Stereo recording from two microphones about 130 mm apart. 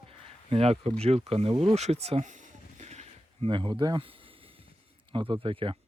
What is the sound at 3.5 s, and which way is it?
Speech, 40° right (ahead or behind).